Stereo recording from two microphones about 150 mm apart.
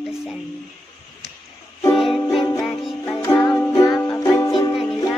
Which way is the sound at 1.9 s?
Centre (ahead or behind).